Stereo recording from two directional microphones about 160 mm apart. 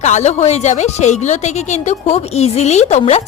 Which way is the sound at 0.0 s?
45° left (ahead or behind).